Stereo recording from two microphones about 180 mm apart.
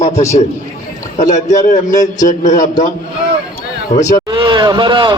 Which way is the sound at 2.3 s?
45° left (ahead or behind).